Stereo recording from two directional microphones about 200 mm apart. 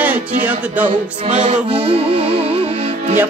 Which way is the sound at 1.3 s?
35° right (ahead or behind).